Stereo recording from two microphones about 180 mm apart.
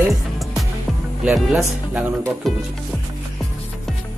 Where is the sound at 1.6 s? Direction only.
15° right (ahead or behind).